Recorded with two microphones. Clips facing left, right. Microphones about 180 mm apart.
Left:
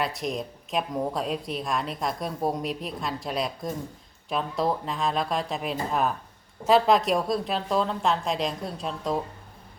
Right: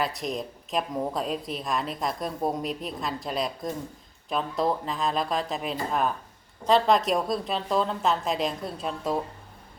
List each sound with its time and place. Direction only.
0.0 s speech: centre (ahead or behind)